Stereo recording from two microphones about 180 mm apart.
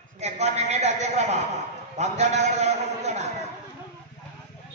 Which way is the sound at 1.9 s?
40° right (ahead or behind).